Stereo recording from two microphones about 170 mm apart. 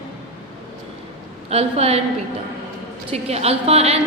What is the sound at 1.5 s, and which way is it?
Speech, 35° right (ahead or behind).